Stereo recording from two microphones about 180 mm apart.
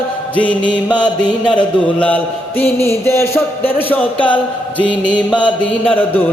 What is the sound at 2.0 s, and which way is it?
Mantra, 10° left (ahead or behind).